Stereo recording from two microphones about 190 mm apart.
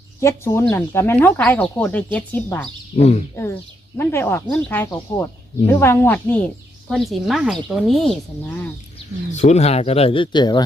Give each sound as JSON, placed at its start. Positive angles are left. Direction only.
{"t": 0.2, "sound": "speech", "side_deg": 15}
{"t": 2.9, "sound": "speech", "side_deg": 35}
{"t": 3.3, "sound": "speech", "side_deg": 15}
{"t": 9.3, "sound": "speech", "side_deg": 35}